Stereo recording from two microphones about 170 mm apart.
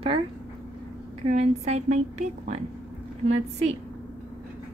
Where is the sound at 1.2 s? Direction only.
40° right (ahead or behind).